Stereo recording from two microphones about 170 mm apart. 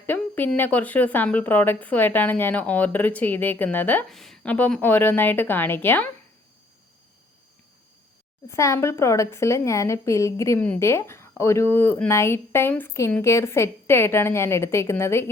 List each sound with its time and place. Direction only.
0.0 s a woman's voice: 10° left (ahead or behind)
8.4 s a woman's voice: 15° left (ahead or behind)